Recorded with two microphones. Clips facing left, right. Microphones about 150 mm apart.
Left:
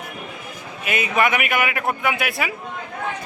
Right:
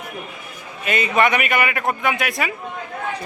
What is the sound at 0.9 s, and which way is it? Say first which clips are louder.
A man's voice: right 2 dB; 5° left (ahead or behind).